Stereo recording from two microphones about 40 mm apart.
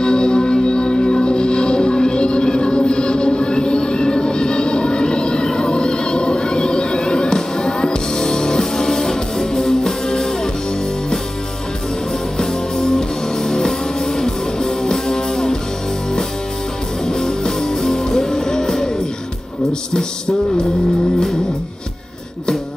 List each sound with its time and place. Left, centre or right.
0.0 s music: left
12.4 s music: centre
17.0 s music: centre